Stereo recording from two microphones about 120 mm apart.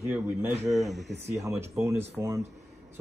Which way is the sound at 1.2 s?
25° right (ahead or behind).